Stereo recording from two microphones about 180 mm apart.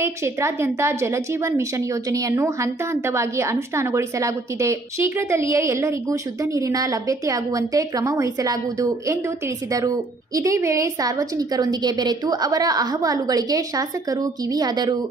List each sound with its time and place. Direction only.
0.0 s a woman's voice: 15° right (ahead or behind)